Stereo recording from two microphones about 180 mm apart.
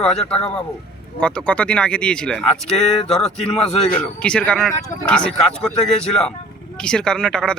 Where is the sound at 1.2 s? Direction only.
5° left (ahead or behind).